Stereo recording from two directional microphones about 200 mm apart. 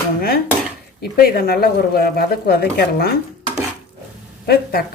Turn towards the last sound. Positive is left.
turn(degrees=50)  # may be behind; listen again after turning